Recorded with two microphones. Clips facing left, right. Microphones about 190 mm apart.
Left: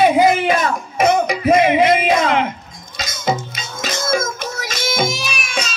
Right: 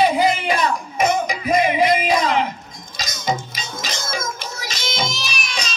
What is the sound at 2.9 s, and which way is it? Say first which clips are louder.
Music: left 3 dB; 50° left (ahead or behind).